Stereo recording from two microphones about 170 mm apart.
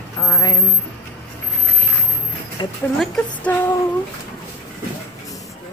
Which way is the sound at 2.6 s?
25° left (ahead or behind).